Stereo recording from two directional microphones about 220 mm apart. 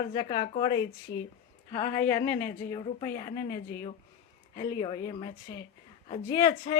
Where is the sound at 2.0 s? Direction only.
10° left (ahead or behind).